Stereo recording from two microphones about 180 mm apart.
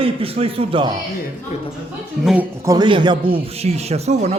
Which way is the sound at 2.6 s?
25° right (ahead or behind).